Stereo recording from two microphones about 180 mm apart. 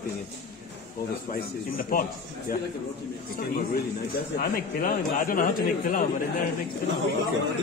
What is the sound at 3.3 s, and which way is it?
A man's voice, 55° left (ahead or behind).